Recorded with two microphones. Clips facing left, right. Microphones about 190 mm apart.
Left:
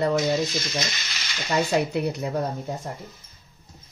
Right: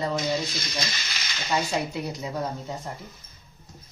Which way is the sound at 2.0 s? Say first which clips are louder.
Left 6 dB; 60° left (ahead or behind).